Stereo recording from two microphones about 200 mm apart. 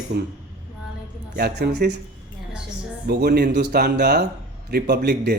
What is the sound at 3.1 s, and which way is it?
Speech, 55° right (ahead or behind).